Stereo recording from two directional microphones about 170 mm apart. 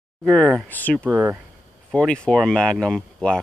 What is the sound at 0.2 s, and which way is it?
Speech, 5° left (ahead or behind).